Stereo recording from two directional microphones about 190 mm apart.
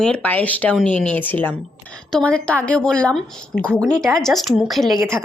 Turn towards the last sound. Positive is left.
turn(degrees=0)  # may be behind; listen again after turning